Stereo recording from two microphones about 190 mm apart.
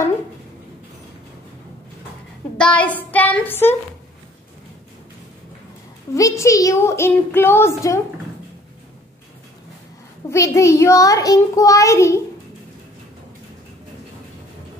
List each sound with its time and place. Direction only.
2.5 s a woman's voice: 5° left (ahead or behind)
3.0 s a sound: 10° left (ahead or behind)
6.1 s a child's voice: 15° left (ahead or behind)
10.3 s a child's voice: 15° left (ahead or behind)